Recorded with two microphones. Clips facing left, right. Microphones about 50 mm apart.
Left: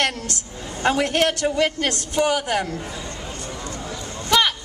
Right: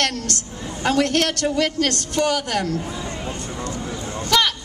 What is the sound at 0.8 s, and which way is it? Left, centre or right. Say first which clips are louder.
A woman's voice: even; centre.